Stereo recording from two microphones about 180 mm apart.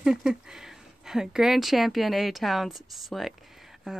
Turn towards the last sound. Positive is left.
turn(degrees=0)  # may be behind; listen again after turning